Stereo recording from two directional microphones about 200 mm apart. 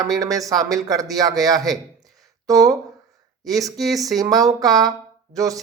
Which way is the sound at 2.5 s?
15° right (ahead or behind).